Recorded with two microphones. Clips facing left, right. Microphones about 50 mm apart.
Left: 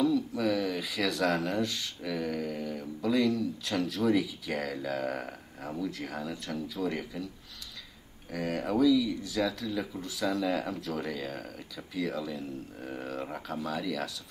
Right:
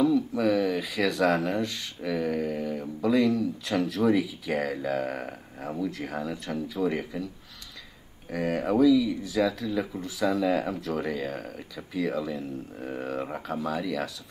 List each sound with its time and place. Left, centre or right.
0.0 s speech: centre
8.3 s speech: centre